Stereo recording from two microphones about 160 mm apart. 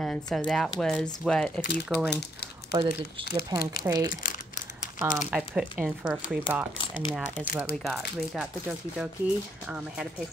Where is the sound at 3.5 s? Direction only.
25° right (ahead or behind).